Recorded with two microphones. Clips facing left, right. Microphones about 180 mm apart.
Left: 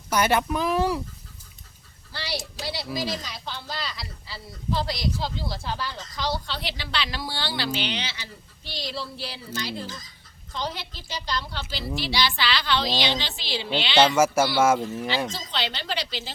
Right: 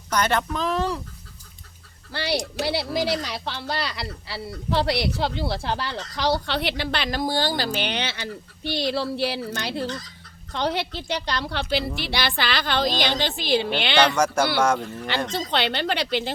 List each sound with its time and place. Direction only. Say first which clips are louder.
0.1 s speech: left 1 dB; 10° left (ahead or behind)
2.1 s a woman's voice: right 8 dB; 60° right (ahead or behind)
15.3 s speech: right 7 dB; 60° right (ahead or behind)